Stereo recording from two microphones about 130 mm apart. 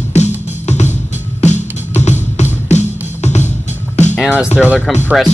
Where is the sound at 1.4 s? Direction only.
60° left (ahead or behind).